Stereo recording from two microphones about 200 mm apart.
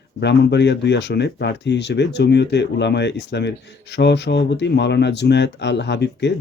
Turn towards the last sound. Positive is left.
turn(degrees=60)  # may be behind; listen again after turning